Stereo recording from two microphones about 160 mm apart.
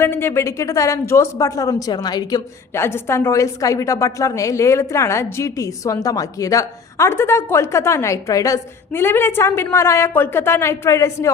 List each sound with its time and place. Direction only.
0.0 s a woman's voice: 15° left (ahead or behind)